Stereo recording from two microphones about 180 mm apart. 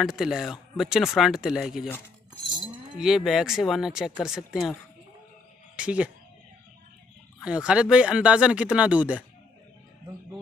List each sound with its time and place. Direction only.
0.0 s speech: centre (ahead or behind)
2.4 s livestock: 25° right (ahead or behind)
3.0 s speech: centre (ahead or behind)
5.8 s speech: 5° right (ahead or behind)
7.4 s speech: 5° right (ahead or behind)